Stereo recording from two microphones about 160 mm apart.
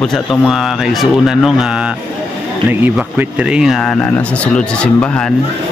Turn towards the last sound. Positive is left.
turn(degrees=5)  # may be behind; listen again after turning